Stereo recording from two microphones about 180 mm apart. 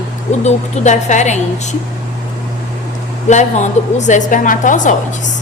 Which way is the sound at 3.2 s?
40° left (ahead or behind).